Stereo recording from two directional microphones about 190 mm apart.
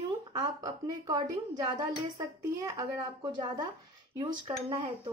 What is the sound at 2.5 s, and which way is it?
A woman's voice, 20° right (ahead or behind).